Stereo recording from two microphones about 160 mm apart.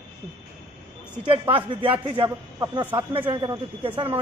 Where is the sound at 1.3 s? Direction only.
35° right (ahead or behind).